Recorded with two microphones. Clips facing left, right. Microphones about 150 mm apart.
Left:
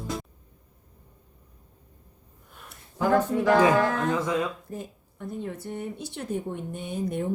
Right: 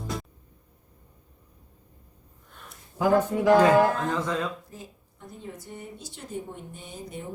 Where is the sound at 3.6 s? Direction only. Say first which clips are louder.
Right 2 dB; 10° left (ahead or behind).